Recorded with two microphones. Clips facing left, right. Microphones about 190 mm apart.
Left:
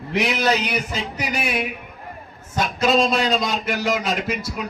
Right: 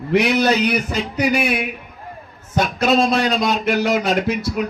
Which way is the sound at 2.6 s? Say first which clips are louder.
Right 2 dB; 65° right (ahead or behind).